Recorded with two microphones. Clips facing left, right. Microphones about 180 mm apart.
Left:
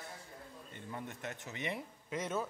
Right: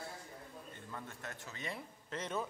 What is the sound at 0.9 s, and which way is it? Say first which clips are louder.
Speech: left 4 dB; 20° left (ahead or behind).